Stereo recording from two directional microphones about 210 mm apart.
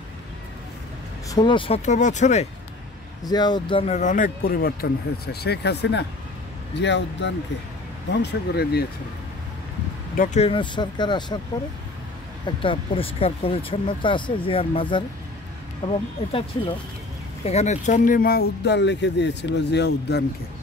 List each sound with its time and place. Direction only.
1.3 s speech: 20° left (ahead or behind)
3.3 s speech: 20° left (ahead or behind); by 8.8 s 50° left (ahead or behind)
10.1 s speech: 35° left (ahead or behind); by 11.3 s 20° left (ahead or behind)
12.6 s speech: 25° left (ahead or behind)
17.5 s speech: 30° left (ahead or behind); by 20.2 s 50° left (ahead or behind)